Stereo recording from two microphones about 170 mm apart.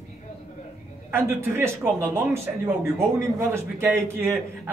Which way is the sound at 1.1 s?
15° right (ahead or behind).